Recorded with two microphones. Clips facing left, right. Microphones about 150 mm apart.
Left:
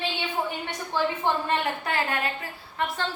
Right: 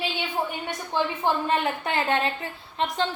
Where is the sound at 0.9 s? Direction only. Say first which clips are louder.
Right 1 dB; 20° right (ahead or behind).